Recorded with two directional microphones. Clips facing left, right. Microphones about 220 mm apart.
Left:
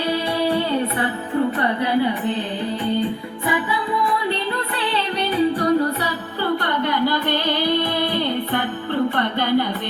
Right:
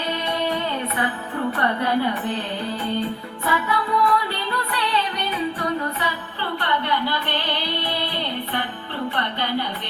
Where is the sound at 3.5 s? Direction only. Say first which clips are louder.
Left 1 dB; 15° left (ahead or behind).